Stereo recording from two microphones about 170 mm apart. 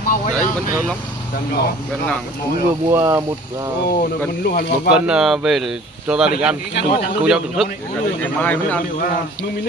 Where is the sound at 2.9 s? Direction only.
20° right (ahead or behind).